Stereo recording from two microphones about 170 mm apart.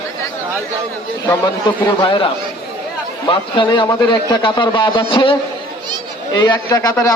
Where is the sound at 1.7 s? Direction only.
20° left (ahead or behind).